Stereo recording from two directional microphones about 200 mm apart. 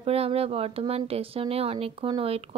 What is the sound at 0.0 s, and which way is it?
Speech, 30° right (ahead or behind).